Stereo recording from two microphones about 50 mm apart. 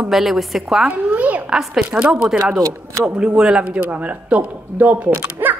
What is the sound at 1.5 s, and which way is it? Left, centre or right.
Speech, centre.